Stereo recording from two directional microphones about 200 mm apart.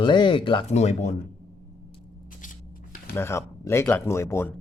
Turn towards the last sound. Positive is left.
turn(degrees=10)  # may be behind; listen again after turning